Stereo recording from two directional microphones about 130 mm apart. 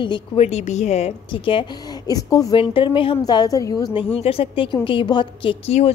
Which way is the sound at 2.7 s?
40° left (ahead or behind).